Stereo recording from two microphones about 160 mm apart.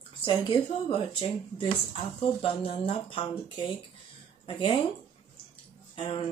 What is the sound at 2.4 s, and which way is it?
Speech, 35° left (ahead or behind).